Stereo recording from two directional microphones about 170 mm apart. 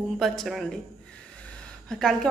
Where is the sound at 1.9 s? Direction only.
5° left (ahead or behind).